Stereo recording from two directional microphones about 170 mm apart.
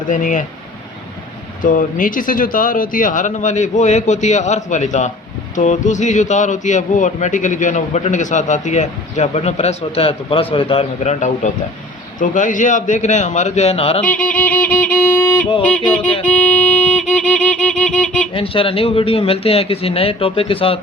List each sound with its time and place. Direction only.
0.1 s speech: 50° left (ahead or behind)
1.6 s speech: 50° left (ahead or behind); by 14.0 s 35° left (ahead or behind)
14.0 s music: 5° left (ahead or behind)
15.6 s speech: 5° left (ahead or behind)
16.2 s music: 10° left (ahead or behind)
17.2 s speech: 45° left (ahead or behind)
17.6 s speech: 5° left (ahead or behind)
18.3 s speech: 35° left (ahead or behind)